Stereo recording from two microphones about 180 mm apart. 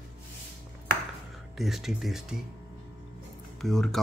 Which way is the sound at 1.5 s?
Centre (ahead or behind).